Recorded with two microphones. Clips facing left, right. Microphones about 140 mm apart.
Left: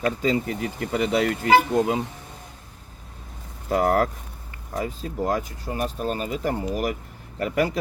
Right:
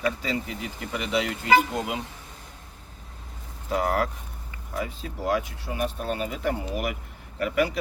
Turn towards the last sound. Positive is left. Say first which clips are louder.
# left 1 dB
turn(degrees=40)  # may be behind; listen again after turning